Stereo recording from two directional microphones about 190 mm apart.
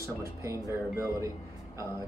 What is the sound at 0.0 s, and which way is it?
Speech, 15° right (ahead or behind).